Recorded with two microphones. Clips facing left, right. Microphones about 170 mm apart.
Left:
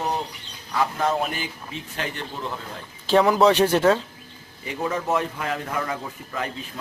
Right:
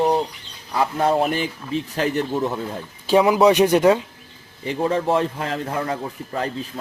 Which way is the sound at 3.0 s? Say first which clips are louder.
Right 2 dB; 10° right (ahead or behind).